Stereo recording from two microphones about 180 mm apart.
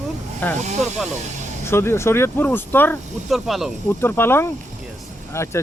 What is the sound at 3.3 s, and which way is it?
Speech, centre (ahead or behind).